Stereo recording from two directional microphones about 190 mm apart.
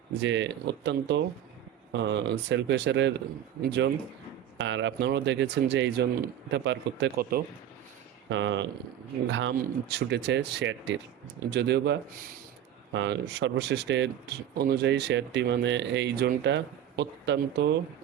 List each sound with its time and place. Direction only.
0.2 s speech: 70° right (ahead or behind)
4.5 s speech: 75° right (ahead or behind)
7.2 s speech: 50° right (ahead or behind)
8.3 s speech: 75° right (ahead or behind)
9.6 s speech: 60° right (ahead or behind)
14.5 s speech: 60° right (ahead or behind)